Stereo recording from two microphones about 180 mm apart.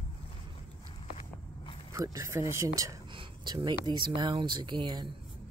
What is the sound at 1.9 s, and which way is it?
Speech, 20° right (ahead or behind).